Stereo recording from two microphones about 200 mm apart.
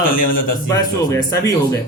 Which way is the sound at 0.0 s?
45° left (ahead or behind).